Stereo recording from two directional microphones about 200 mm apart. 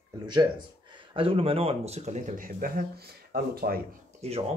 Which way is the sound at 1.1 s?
25° right (ahead or behind).